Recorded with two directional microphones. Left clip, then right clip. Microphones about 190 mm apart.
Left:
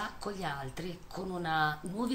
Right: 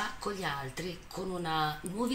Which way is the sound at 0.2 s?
25° left (ahead or behind).